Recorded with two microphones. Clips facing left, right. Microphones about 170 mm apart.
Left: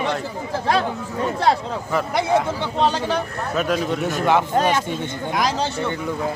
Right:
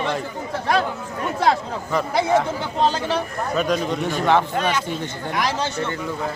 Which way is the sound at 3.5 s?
5° left (ahead or behind).